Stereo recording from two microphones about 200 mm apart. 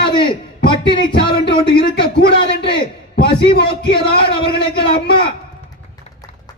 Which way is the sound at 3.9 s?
25° left (ahead or behind).